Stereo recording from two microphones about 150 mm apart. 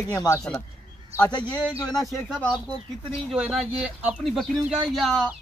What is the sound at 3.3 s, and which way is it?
Speech, 5° right (ahead or behind).